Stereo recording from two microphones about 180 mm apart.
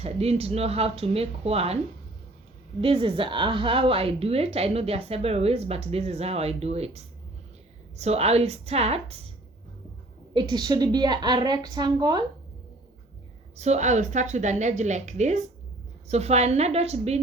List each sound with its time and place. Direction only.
0.0 s a woman's voice: 35° right (ahead or behind)
2.8 s a woman's voice: 30° right (ahead or behind)
10.3 s a woman's voice: 25° right (ahead or behind)
13.6 s a woman's voice: 40° right (ahead or behind)